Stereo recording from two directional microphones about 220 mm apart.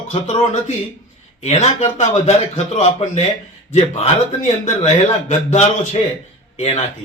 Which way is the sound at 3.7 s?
30° left (ahead or behind).